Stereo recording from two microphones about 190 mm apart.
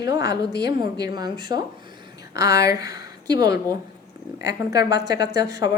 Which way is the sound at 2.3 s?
20° right (ahead or behind).